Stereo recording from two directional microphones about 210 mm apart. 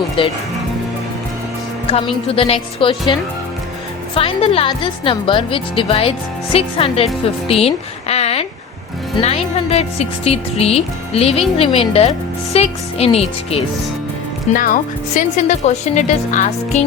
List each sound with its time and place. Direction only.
0.2 s speech: 25° left (ahead or behind)
1.9 s speech: 25° left (ahead or behind)
4.1 s speech: 25° left (ahead or behind)
14.5 s speech: 40° left (ahead or behind)